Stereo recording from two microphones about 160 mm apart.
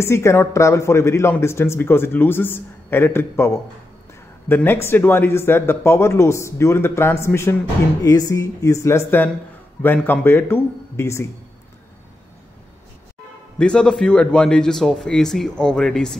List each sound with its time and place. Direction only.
0.0 s speech: 15° left (ahead or behind)
13.6 s a man's voice: 5° left (ahead or behind)